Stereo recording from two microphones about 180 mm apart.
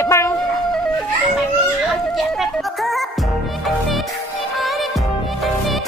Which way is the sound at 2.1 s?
Centre (ahead or behind).